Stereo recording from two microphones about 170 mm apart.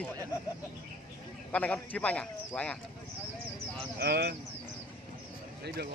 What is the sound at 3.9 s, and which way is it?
Speech, 75° right (ahead or behind).